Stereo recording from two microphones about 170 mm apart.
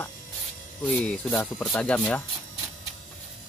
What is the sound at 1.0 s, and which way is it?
Speech, 10° left (ahead or behind).